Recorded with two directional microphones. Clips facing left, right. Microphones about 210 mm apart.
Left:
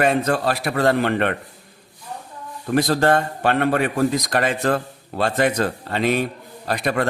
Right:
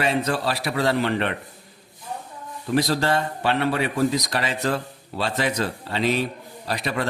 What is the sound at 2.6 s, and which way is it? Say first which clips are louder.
Speech: left 4 dB; 50° left (ahead or behind).